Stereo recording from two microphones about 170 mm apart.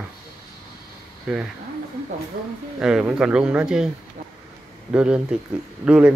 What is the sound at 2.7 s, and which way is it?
Speech, 5° right (ahead or behind).